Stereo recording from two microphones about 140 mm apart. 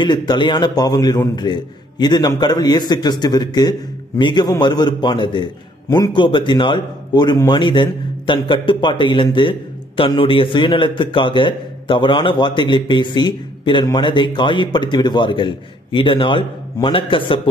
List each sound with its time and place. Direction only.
0.0 s a man's voice: 30° left (ahead or behind)